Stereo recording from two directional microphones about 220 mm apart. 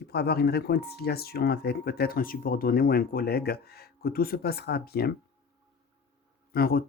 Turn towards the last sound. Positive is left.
turn(degrees=45)  # may be behind; listen again after turning